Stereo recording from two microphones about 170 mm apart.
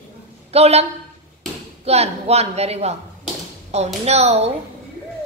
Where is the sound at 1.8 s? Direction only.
40° right (ahead or behind).